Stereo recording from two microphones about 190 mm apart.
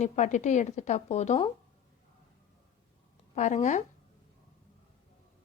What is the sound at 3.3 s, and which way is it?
Speech, 40° left (ahead or behind).